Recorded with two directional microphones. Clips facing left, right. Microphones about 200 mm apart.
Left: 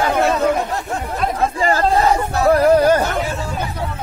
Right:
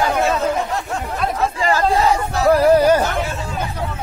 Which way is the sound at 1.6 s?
35° left (ahead or behind).